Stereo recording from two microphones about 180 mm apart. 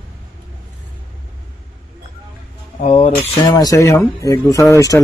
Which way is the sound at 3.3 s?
25° left (ahead or behind).